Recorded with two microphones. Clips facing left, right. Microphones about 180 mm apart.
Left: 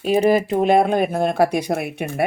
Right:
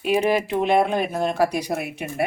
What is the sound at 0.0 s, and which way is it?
Speech, 40° left (ahead or behind).